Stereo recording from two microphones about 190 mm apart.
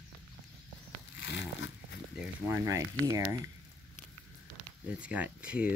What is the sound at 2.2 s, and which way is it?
Speech, 15° right (ahead or behind).